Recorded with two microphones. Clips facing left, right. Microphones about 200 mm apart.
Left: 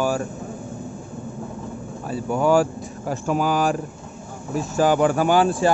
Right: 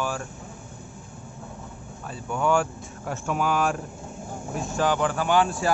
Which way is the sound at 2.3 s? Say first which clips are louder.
Left 5 dB; 35° left (ahead or behind).